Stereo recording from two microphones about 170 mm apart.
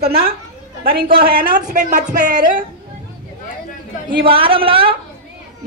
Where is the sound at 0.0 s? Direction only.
65° right (ahead or behind).